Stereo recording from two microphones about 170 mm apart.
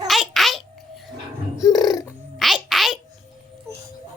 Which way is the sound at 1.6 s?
20° left (ahead or behind).